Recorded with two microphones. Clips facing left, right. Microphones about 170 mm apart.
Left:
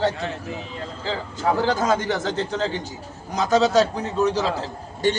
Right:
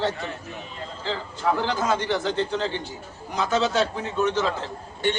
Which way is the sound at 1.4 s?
40° left (ahead or behind).